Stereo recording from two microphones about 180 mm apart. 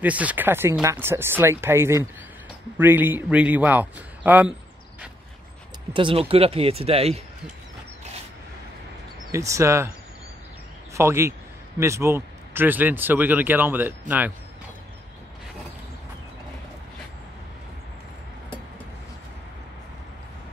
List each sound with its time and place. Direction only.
0.0 s speech: 10° right (ahead or behind)
5.9 s speech: 30° right (ahead or behind)
9.3 s speech: 15° right (ahead or behind)
11.0 s speech: 15° right (ahead or behind)